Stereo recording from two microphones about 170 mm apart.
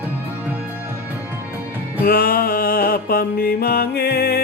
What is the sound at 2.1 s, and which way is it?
Music, 60° left (ahead or behind).